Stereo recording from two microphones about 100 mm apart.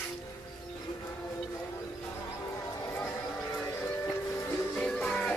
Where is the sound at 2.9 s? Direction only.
25° left (ahead or behind).